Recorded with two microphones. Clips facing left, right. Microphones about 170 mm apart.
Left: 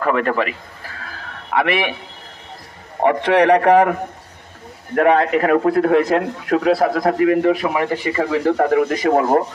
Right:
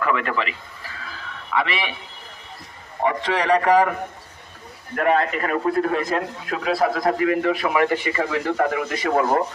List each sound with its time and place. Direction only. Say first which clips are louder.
0.0 s a man's voice: left 5 dB; 45° left (ahead or behind)
3.0 s a man's voice: left 8 dB; 65° left (ahead or behind)
4.9 s a man's voice: left 6 dB; 65° left (ahead or behind)
7.2 s speech: left 5 dB; 40° left (ahead or behind)